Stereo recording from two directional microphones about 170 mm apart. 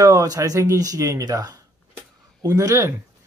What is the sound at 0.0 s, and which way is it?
Speech, 20° right (ahead or behind).